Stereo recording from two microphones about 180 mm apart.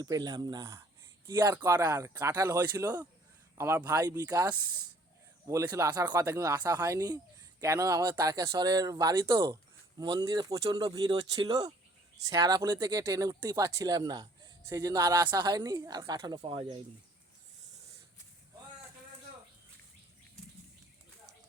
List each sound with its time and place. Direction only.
0.0 s speech: 20° right (ahead or behind)